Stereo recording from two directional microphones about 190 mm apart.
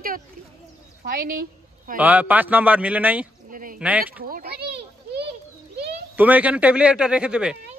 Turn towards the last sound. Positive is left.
turn(degrees=-5)  # may be behind; listen again after turning